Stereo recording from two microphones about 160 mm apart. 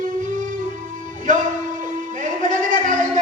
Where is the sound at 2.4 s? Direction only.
55° right (ahead or behind).